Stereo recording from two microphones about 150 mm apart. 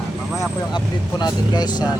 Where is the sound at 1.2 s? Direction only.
30° left (ahead or behind).